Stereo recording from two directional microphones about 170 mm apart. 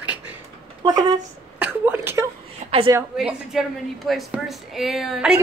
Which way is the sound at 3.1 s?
Centre (ahead or behind).